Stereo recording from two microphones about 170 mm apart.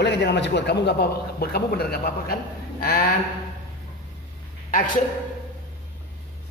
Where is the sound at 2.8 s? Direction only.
65° left (ahead or behind).